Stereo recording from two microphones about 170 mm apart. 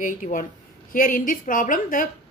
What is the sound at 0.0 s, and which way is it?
A woman's voice, 50° left (ahead or behind).